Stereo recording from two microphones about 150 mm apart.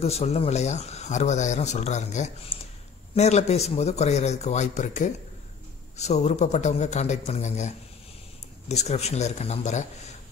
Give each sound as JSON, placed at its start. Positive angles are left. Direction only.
{"t": 0.0, "sound": "speech", "side_deg": 45}